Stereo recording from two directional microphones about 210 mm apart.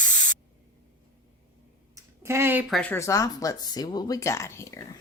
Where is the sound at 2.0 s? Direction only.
10° right (ahead or behind); by 4.9 s 15° left (ahead or behind).